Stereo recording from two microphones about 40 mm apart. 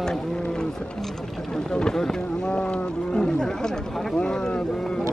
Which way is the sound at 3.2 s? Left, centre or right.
Centre.